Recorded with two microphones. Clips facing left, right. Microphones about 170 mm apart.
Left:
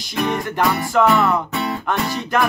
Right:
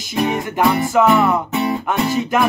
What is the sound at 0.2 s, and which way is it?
Music, 25° right (ahead or behind).